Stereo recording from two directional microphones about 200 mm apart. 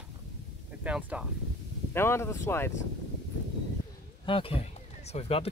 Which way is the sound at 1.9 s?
10° left (ahead or behind).